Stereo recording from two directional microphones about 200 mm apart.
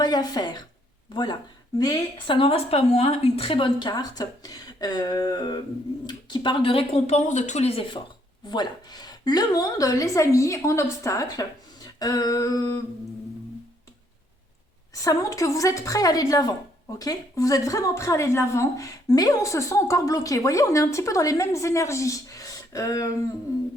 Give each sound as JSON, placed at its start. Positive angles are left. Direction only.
{"t": 0.0, "sound": "a woman's voice", "side_deg": 20}
{"t": 15.0, "sound": "a woman's voice", "side_deg": 15}